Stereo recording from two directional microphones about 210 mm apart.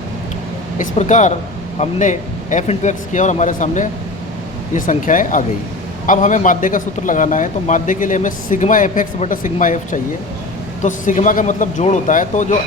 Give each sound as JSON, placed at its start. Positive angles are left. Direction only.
{"t": 0.8, "sound": "speech", "side_deg": 35}